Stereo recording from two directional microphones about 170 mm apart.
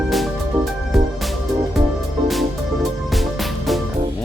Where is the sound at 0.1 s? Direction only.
Centre (ahead or behind).